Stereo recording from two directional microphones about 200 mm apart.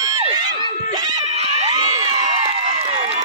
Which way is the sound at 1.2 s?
30° right (ahead or behind).